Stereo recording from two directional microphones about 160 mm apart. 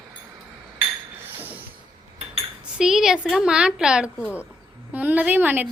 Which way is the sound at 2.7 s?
5° right (ahead or behind).